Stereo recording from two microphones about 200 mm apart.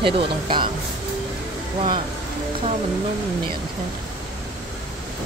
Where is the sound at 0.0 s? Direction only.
25° right (ahead or behind).